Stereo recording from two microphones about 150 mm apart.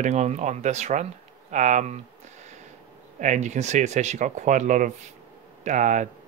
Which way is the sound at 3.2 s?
55° right (ahead or behind).